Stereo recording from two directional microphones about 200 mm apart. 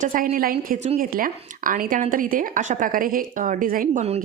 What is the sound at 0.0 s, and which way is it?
A woman's voice, 45° right (ahead or behind).